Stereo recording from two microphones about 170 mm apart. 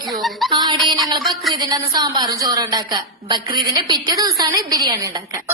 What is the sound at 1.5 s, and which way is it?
A woman's voice, 25° right (ahead or behind).